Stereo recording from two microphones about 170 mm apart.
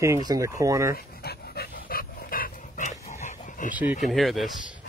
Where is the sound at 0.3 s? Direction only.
20° right (ahead or behind).